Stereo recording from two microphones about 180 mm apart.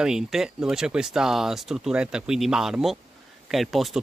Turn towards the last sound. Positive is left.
turn(degrees=0)  # may be behind; listen again after turning